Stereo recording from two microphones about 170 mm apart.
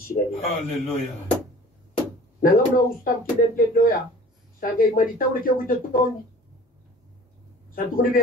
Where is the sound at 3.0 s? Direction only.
55° left (ahead or behind).